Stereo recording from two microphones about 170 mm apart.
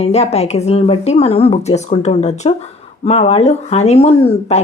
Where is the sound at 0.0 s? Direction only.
40° left (ahead or behind).